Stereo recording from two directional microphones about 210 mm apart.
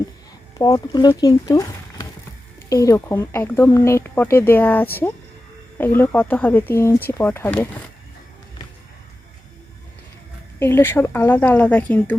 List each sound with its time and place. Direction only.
0.6 s speech: 20° left (ahead or behind)
10.6 s speech: 10° left (ahead or behind)